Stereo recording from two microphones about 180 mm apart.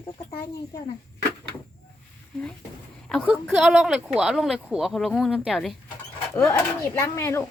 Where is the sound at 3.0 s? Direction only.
5° left (ahead or behind).